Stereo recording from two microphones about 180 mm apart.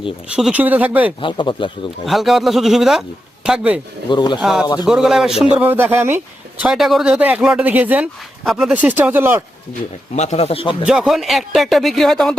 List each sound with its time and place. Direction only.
0.3 s speech: 5° right (ahead or behind)
1.2 s speech: 25° left (ahead or behind)
2.0 s speech: centre (ahead or behind)
4.1 s speech: 25° left (ahead or behind)
4.4 s speech: centre (ahead or behind)
4.6 s speech: 25° left (ahead or behind)
4.9 s speech: 5° right (ahead or behind)
10.2 s speech: 40° left (ahead or behind)
10.8 s speech: centre (ahead or behind)